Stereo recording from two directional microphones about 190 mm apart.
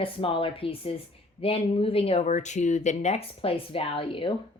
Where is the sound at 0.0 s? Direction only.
30° left (ahead or behind).